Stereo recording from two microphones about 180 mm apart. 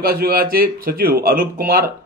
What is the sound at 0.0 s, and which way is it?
A man's voice, 55° right (ahead or behind).